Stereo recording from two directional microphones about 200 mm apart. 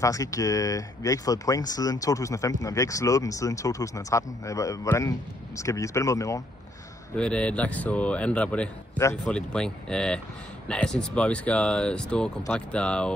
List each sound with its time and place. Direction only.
0.0 s a man's voice: 15° left (ahead or behind)
7.2 s a man's voice: 5° left (ahead or behind)